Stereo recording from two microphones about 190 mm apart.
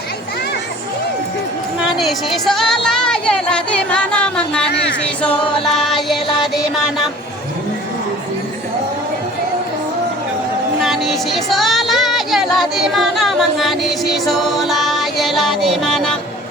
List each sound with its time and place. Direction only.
2.0 s music: centre (ahead or behind)
4.7 s music: 65° left (ahead or behind)
5.7 s music: centre (ahead or behind)
10.8 s a sound: centre (ahead or behind)